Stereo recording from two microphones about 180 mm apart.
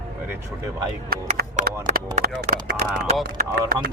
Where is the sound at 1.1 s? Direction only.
55° right (ahead or behind).